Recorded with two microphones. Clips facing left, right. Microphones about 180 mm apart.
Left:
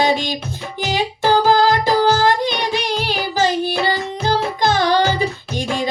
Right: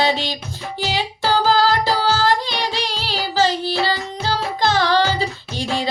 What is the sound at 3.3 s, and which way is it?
Child singing, 15° left (ahead or behind).